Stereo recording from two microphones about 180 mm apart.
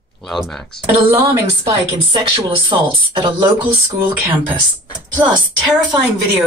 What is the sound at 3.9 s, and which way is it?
Speech, 10° right (ahead or behind).